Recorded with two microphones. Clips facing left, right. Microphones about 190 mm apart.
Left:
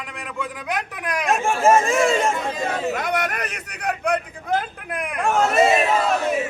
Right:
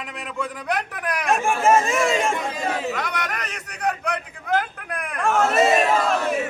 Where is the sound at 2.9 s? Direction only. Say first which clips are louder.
Left 4 dB; 50° left (ahead or behind).